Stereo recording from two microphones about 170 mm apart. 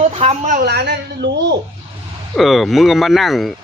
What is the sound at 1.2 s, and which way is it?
Speech, 90° right.